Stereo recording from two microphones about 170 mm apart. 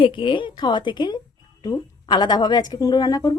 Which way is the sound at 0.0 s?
30° left (ahead or behind).